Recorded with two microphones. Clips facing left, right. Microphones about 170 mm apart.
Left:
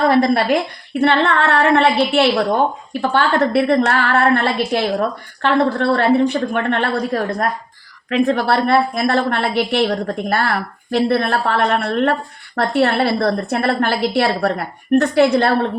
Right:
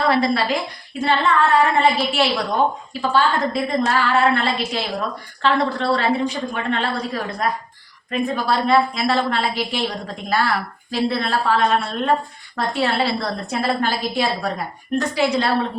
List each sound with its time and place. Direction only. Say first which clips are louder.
0.1 s a woman's voice: left 5 dB; 55° left (ahead or behind)
7.1 s speech: left 6 dB; 50° left (ahead or behind)
8.1 s a woman's voice: left 5 dB; 75° left (ahead or behind); by 15.6 s 55° left (ahead or behind)